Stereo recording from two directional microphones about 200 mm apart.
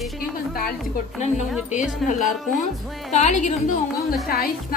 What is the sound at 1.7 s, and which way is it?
Speech, 40° left (ahead or behind).